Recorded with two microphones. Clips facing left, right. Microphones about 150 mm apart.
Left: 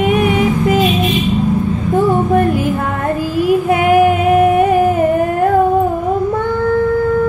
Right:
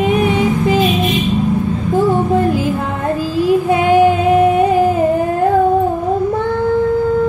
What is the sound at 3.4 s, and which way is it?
Female singing, 30° right (ahead or behind).